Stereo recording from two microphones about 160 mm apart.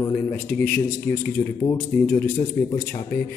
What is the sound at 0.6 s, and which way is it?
A man's voice, 15° left (ahead or behind).